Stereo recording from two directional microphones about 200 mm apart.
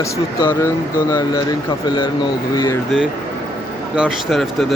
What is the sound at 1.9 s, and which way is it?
Speech, 25° left (ahead or behind).